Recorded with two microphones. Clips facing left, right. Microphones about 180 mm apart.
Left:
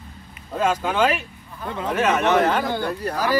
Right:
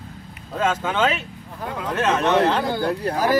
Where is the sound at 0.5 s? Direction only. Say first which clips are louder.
Left 1 dB; 10° left (ahead or behind).